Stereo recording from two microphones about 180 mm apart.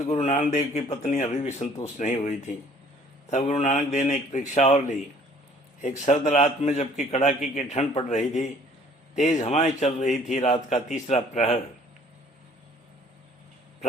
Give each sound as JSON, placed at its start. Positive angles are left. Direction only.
{"t": 0.0, "sound": "a man's voice", "side_deg": 35}
{"t": 6.1, "sound": "a man's voice", "side_deg": 40}